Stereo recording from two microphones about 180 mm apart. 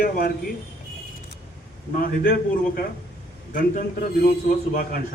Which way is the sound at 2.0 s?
55° left (ahead or behind).